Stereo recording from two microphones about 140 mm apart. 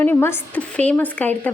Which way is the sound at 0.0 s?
15° left (ahead or behind).